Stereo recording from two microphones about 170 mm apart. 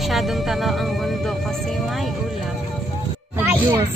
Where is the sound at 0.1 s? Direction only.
Centre (ahead or behind).